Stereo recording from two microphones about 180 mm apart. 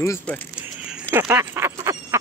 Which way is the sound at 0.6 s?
5° right (ahead or behind).